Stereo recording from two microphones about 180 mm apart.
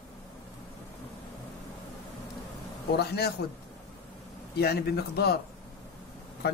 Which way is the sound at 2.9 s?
65° left (ahead or behind).